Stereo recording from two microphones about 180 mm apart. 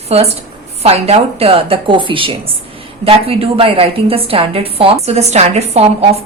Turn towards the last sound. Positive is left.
turn(degrees=-35)  # may be behind; listen again after turning